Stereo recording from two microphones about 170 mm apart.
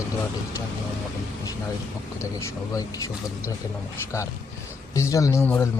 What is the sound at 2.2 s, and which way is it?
Speech, 15° left (ahead or behind).